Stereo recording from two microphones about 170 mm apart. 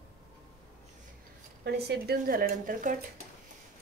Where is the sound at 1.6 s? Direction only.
75° right (ahead or behind); by 2.9 s 50° right (ahead or behind).